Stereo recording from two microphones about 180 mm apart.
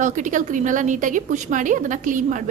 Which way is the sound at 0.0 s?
45° right (ahead or behind).